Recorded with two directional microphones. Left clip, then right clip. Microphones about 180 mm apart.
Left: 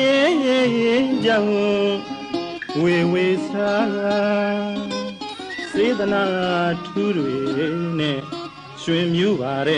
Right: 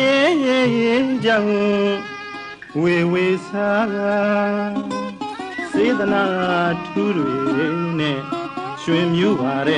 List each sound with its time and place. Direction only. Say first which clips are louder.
0.0 s carnatic music: right 1 dB; 10° right (ahead or behind)
2.8 s music: right 1 dB; 10° right (ahead or behind)
5.8 s music: right 1 dB; 10° right (ahead or behind)